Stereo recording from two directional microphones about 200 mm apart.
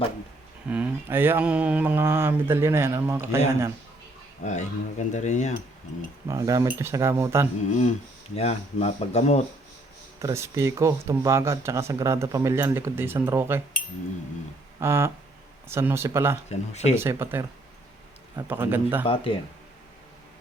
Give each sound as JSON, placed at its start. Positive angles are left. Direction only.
{"t": 0.7, "sound": "speech", "side_deg": -10}
{"t": 4.4, "sound": "speech", "side_deg": 35}
{"t": 6.2, "sound": "speech", "side_deg": -15}
{"t": 7.6, "sound": "speech", "side_deg": 35}
{"t": 10.2, "sound": "speech", "side_deg": -15}
{"t": 14.8, "sound": "speech", "side_deg": -10}
{"t": 16.5, "sound": "speech", "side_deg": 35}
{"t": 16.9, "sound": "speech", "side_deg": -10}
{"t": 19.0, "sound": "speech", "side_deg": 25}